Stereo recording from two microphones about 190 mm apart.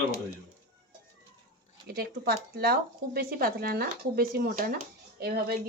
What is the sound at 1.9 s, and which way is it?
Speech, 55° right (ahead or behind).